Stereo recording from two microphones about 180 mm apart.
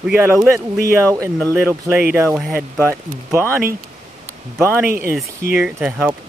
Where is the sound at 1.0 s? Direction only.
15° right (ahead or behind).